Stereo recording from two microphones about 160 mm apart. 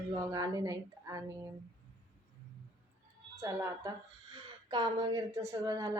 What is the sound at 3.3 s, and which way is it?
Speech, 20° right (ahead or behind).